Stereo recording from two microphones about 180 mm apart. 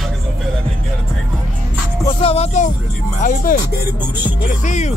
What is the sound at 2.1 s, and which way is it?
Speech, 35° left (ahead or behind).